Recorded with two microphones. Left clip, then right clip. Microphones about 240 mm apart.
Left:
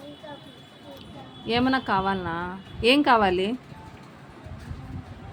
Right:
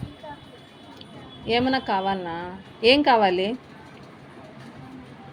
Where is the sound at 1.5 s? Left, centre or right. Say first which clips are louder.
Right 1 dB; left.